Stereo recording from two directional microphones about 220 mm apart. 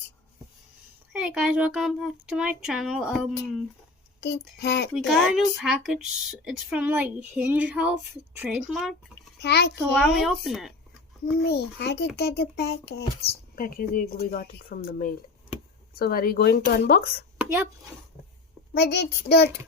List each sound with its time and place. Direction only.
1.1 s speech: 5° right (ahead or behind)
4.2 s a child's voice: 50° left (ahead or behind)
4.9 s speech: centre (ahead or behind)
9.4 s a child's voice: 50° left (ahead or behind)
10.2 s speech: centre (ahead or behind)
11.3 s a child's voice: 45° left (ahead or behind)
18.7 s a child's voice: 50° left (ahead or behind)